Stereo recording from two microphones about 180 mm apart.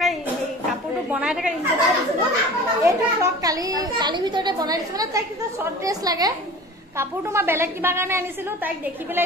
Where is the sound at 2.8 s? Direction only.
20° right (ahead or behind).